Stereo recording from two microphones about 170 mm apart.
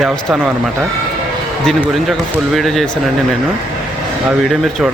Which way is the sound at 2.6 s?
Centre (ahead or behind).